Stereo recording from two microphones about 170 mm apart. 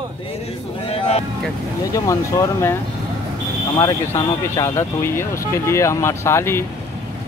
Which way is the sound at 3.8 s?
20° left (ahead or behind).